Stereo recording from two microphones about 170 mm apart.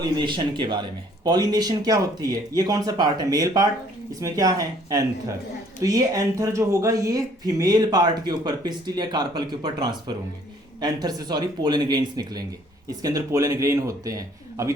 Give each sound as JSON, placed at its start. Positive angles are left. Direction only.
{"t": 0.0, "sound": "speech", "side_deg": -25}